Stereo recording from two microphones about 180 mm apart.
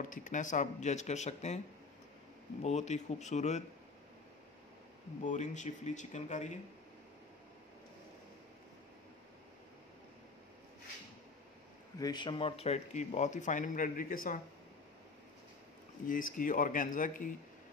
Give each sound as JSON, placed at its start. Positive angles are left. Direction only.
{"t": 0.0, "sound": "speech", "side_deg": 45}
{"t": 2.6, "sound": "speech", "side_deg": 40}
{"t": 5.2, "sound": "speech", "side_deg": 45}
{"t": 12.0, "sound": "speech", "side_deg": 25}
{"t": 16.1, "sound": "speech", "side_deg": 50}